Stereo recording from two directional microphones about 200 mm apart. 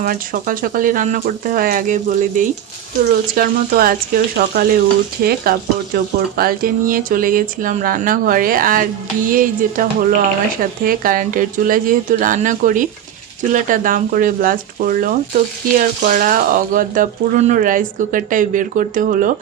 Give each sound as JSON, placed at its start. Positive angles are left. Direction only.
{"t": 0.0, "sound": "frying", "side_deg": -45}
{"t": 16.0, "sound": "speech", "side_deg": -45}